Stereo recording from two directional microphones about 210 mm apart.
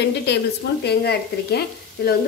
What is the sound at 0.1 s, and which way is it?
Speech, 55° left (ahead or behind).